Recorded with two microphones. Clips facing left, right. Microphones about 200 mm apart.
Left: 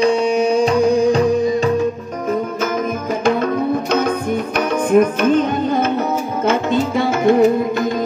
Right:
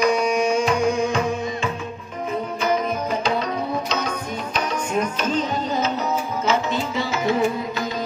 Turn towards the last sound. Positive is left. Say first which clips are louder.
# left 8 dB
turn(degrees=55)  # may be behind; listen again after turning